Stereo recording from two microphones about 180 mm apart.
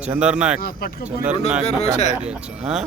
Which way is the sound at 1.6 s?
40° left (ahead or behind).